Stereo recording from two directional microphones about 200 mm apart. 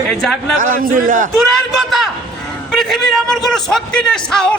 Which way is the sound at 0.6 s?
45° right (ahead or behind).